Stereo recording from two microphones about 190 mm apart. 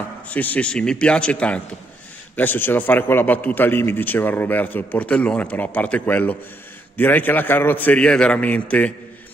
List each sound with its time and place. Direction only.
0.3 s a man's voice: 10° left (ahead or behind)